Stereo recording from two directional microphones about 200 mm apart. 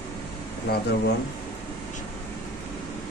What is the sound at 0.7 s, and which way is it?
Speech, 50° left (ahead or behind).